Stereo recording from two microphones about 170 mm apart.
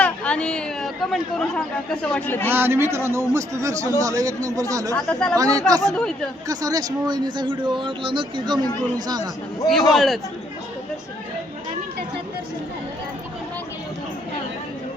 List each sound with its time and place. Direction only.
0.0 s chatter: 5° left (ahead or behind)
2.5 s a man's voice: 15° right (ahead or behind)
9.6 s a man's voice: centre (ahead or behind)